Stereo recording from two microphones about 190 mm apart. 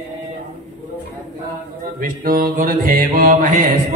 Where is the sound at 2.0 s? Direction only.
50° right (ahead or behind).